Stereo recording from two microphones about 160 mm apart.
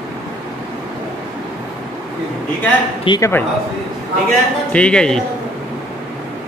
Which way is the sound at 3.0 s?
20° left (ahead or behind).